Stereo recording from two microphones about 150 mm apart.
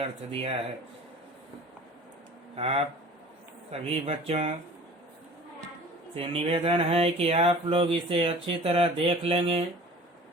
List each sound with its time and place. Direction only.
0.0 s speech: 40° right (ahead or behind)
2.6 s speech: 40° right (ahead or behind)
6.1 s speech: 40° right (ahead or behind)